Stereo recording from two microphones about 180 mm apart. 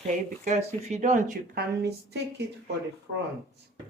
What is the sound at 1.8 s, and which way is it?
Speech, 65° right (ahead or behind).